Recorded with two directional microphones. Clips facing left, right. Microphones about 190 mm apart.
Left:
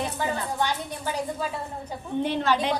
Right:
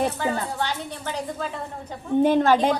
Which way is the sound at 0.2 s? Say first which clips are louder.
Right 1 dB; 15° left (ahead or behind).